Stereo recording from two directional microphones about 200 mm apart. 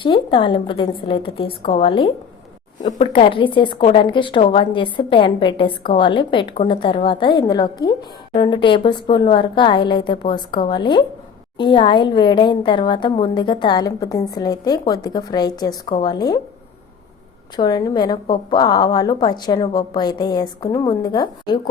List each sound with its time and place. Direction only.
0.0 s a woman's voice: 25° left (ahead or behind)
17.6 s a woman's voice: 20° left (ahead or behind)